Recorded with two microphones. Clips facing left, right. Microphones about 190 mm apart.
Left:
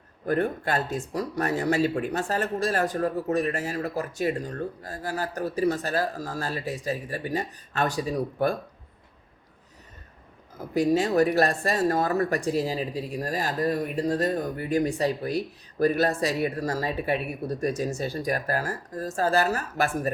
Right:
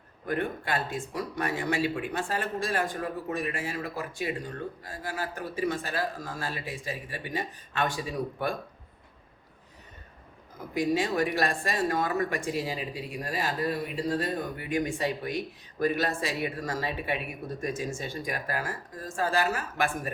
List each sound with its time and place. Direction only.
0.3 s speech: 40° left (ahead or behind)
10.8 s speech: 40° left (ahead or behind)